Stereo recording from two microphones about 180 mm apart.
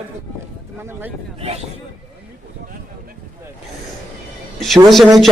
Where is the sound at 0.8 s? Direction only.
15° right (ahead or behind).